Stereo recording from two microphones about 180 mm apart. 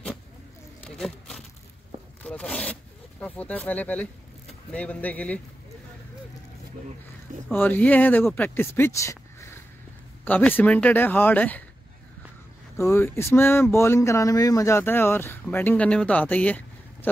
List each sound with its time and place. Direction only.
0.8 s speech: 5° left (ahead or behind)
2.2 s speech: 5° left (ahead or behind)
7.5 s speech: 10° left (ahead or behind)
12.7 s speech: 15° left (ahead or behind)